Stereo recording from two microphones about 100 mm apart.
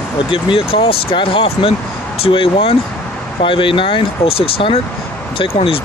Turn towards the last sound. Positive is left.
turn(degrees=65)  # may be behind; listen again after turning